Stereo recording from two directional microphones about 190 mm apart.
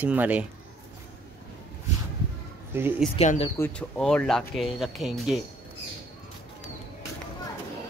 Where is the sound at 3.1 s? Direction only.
35° left (ahead or behind).